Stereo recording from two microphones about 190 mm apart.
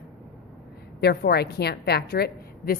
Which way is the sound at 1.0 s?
55° left (ahead or behind).